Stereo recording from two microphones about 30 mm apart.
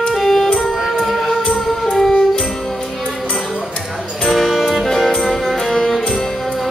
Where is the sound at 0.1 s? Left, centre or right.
Centre.